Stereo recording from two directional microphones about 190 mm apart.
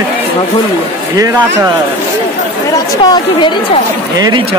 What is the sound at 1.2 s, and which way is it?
Speech, 15° right (ahead or behind).